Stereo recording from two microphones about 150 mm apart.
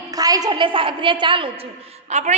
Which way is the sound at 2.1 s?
50° right (ahead or behind).